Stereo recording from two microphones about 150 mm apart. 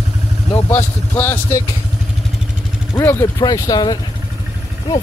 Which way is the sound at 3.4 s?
25° left (ahead or behind).